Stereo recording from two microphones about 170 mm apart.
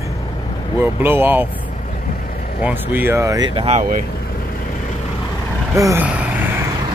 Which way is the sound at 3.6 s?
40° right (ahead or behind).